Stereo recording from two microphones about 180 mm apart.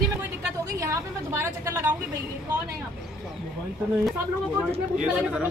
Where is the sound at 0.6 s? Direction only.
15° right (ahead or behind).